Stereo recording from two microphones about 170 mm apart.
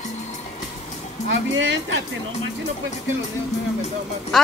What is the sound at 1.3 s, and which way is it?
Music, 90° right.